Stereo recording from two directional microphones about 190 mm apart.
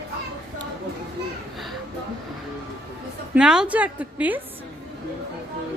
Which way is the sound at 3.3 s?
5° right (ahead or behind).